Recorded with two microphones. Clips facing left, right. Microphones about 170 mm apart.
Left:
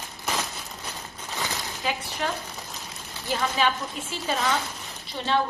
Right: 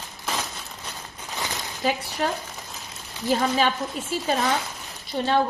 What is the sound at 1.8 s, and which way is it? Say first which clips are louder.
Speech: right 5 dB; 40° right (ahead or behind).